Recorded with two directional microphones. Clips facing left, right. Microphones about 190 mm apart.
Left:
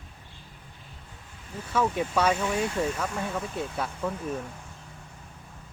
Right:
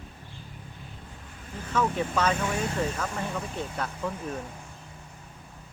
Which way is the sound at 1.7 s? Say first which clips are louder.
Left 1 dB; 10° left (ahead or behind).